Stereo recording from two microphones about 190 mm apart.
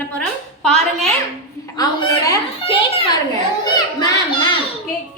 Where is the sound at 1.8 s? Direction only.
20° left (ahead or behind).